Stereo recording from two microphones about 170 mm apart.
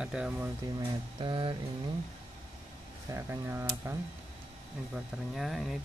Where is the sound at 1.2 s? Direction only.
30° right (ahead or behind).